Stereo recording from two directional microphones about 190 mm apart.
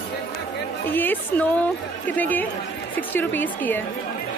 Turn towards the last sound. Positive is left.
turn(degrees=10)  # may be behind; listen again after turning